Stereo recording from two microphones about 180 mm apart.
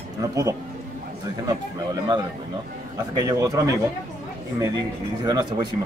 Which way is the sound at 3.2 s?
20° right (ahead or behind).